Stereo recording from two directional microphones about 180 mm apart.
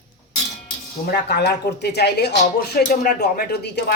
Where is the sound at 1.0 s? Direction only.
65° left (ahead or behind).